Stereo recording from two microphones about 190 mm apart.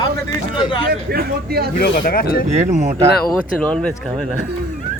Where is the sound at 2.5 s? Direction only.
35° right (ahead or behind).